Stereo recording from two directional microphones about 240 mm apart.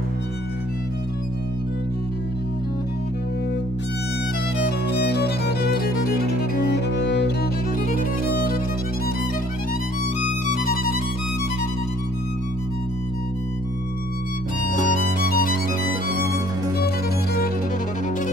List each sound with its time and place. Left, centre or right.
4.6 s music: left
6.7 s cello: left
7.9 s music: left
10.4 s music: left
15.2 s music: left
16.7 s music: left